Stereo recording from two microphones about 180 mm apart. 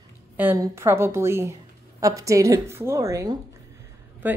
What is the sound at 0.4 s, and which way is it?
A woman's voice, 10° right (ahead or behind).